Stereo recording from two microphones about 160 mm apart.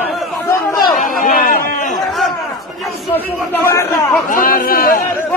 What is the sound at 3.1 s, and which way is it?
Speech, 15° left (ahead or behind).